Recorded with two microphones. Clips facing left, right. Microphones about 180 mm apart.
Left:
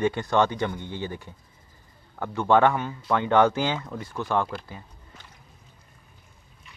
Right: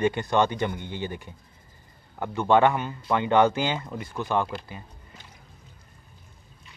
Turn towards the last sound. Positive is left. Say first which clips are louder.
# right 1 dB
turn(degrees=-10)  # may be behind; listen again after turning